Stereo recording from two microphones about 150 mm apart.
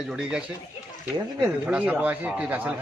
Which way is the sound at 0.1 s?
5° right (ahead or behind).